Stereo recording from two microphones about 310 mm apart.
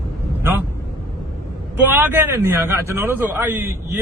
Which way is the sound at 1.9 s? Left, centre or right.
Centre.